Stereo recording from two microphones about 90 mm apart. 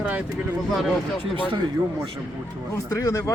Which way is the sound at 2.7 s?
40° left (ahead or behind).